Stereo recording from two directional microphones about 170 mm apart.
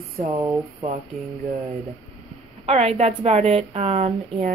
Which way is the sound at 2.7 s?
40° right (ahead or behind).